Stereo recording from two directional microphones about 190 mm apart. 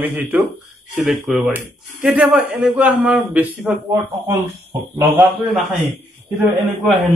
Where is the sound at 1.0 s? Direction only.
5° right (ahead or behind).